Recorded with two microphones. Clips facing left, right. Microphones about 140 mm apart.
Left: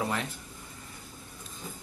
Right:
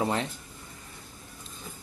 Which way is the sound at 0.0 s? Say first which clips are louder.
Right 4 dB; 30° right (ahead or behind).